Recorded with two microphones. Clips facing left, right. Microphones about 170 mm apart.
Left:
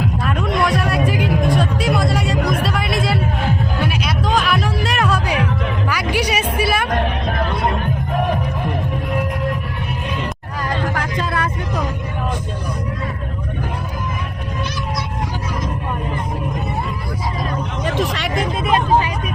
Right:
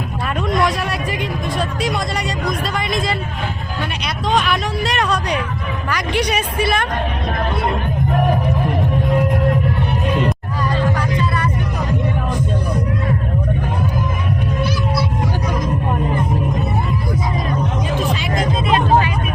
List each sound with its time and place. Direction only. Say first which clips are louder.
0.4 s music: right 1 dB; centre (ahead or behind)
17.9 s hubbub: even; 75° left (ahead or behind)